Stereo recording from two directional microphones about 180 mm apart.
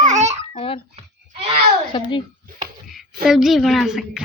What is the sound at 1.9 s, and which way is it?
Speech, 25° left (ahead or behind).